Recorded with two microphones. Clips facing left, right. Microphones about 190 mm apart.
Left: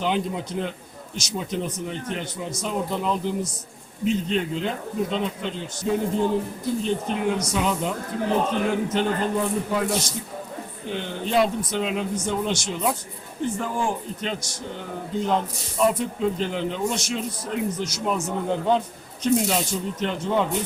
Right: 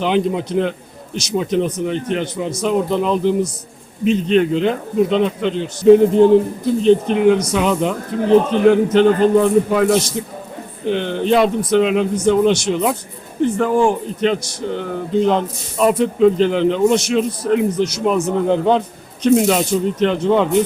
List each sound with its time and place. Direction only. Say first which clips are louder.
0.0 s a man's voice: right 8 dB; 75° right (ahead or behind)